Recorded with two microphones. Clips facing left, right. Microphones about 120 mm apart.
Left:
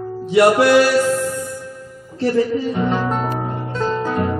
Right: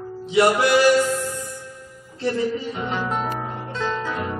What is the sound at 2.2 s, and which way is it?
Music, 40° left (ahead or behind).